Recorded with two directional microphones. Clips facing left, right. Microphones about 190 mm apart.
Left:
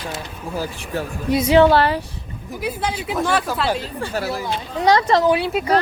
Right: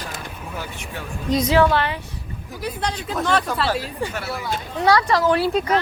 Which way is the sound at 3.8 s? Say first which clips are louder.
Right 1 dB; 15° right (ahead or behind).